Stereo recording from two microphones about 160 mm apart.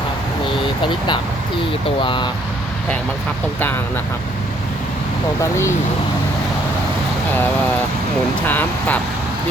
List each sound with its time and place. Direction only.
0.9 s speech: 30° left (ahead or behind)
5.4 s speech: 15° left (ahead or behind)
8.4 s speech: 10° left (ahead or behind)